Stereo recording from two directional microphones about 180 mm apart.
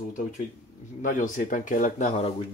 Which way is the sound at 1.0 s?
45° left (ahead or behind).